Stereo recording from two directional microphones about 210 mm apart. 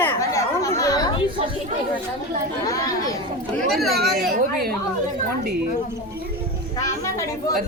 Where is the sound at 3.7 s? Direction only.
Centre (ahead or behind).